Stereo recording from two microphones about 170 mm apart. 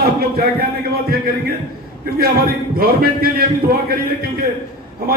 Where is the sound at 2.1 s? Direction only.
60° right (ahead or behind).